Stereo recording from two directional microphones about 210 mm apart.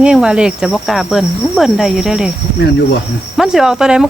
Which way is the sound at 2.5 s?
55° left (ahead or behind).